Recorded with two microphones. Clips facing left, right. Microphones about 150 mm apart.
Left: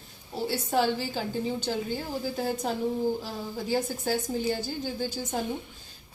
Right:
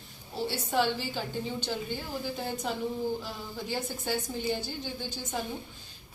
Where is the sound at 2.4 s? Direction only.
40° left (ahead or behind).